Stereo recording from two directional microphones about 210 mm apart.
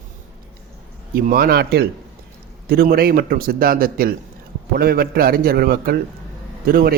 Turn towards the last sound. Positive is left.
turn(degrees=-45)  # may be behind; listen again after turning